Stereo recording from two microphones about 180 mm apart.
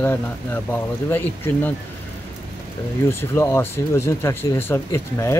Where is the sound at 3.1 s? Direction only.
15° left (ahead or behind).